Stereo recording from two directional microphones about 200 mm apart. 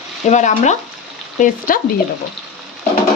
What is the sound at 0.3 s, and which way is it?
Speech, 35° left (ahead or behind).